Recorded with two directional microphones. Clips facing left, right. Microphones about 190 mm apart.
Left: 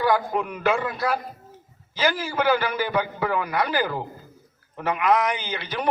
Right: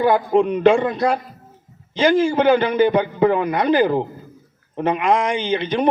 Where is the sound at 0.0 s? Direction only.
25° right (ahead or behind).